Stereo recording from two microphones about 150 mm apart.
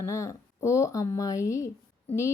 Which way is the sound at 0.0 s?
20° left (ahead or behind).